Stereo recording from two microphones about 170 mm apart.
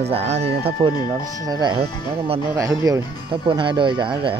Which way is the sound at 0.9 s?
25° left (ahead or behind).